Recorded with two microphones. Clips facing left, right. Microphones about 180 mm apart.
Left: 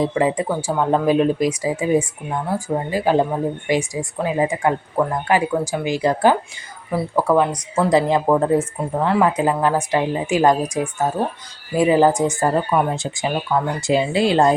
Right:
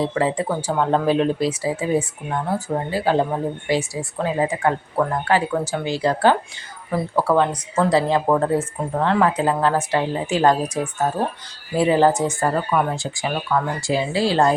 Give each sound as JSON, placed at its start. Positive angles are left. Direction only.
{"t": 0.0, "sound": "speech", "side_deg": 15}